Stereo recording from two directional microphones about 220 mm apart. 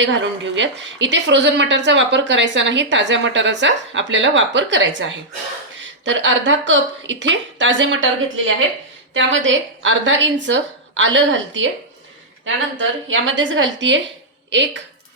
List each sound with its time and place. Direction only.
0.0 s a woman's voice: 55° right (ahead or behind)
13.1 s a woman's voice: 60° right (ahead or behind)